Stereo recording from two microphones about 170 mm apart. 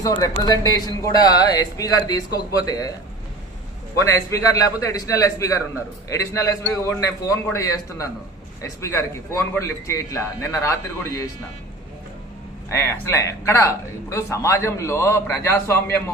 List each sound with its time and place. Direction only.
0.0 s speech: 20° left (ahead or behind)
4.8 s speech: 20° left (ahead or behind)
12.7 s speech: 15° left (ahead or behind)